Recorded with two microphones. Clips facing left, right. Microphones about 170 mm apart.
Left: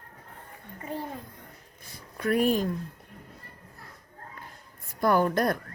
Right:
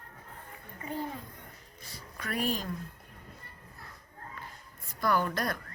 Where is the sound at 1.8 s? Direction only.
50° left (ahead or behind).